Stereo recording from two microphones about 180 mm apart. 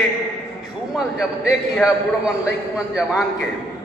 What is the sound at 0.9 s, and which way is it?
A man's voice, 5° right (ahead or behind).